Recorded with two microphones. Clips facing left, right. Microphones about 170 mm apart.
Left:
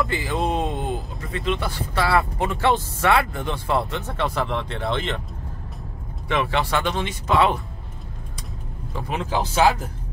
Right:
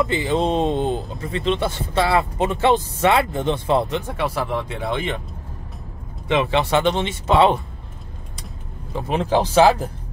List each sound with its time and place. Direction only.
0.0 s speech: 20° right (ahead or behind)
6.2 s speech: 20° right (ahead or behind)
8.9 s speech: 25° right (ahead or behind)